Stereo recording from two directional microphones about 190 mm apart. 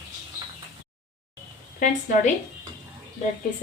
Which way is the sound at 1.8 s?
40° left (ahead or behind).